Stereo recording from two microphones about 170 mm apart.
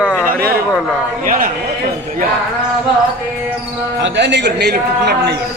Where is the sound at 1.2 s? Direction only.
55° right (ahead or behind).